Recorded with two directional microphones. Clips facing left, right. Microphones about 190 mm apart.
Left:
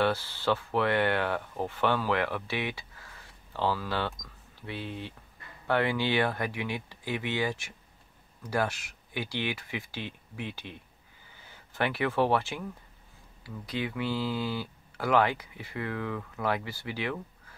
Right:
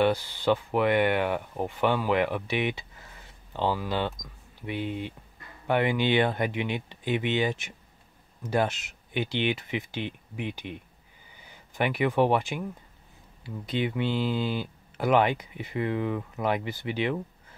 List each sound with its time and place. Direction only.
0.0 s speech: 15° right (ahead or behind)